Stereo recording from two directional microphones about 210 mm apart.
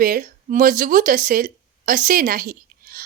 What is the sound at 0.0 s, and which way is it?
A woman's voice, 40° right (ahead or behind).